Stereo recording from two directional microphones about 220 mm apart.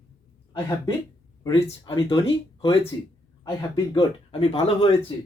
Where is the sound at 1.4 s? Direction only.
20° left (ahead or behind).